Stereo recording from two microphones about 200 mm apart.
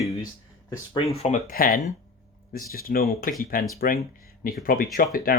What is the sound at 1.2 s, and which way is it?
Speech, 35° left (ahead or behind).